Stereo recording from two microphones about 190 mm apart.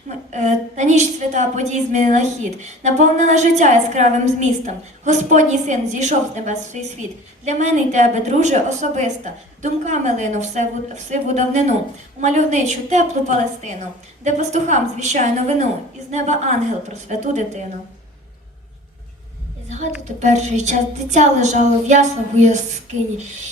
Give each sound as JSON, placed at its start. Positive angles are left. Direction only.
{"t": 0.3, "sound": "a woman's voice", "side_deg": -40}
{"t": 20.1, "sound": "a woman's voice", "side_deg": -35}